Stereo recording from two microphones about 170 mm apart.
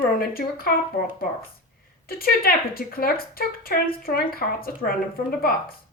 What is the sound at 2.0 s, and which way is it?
A woman's voice, 60° left (ahead or behind).